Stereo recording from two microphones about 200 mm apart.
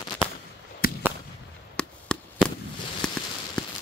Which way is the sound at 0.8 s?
50° left (ahead or behind).